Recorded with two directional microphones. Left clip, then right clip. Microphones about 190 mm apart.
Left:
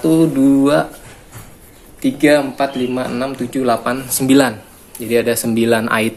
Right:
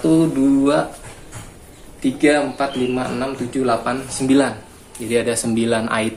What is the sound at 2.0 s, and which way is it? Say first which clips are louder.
A man's voice: left 3 dB; 55° left (ahead or behind).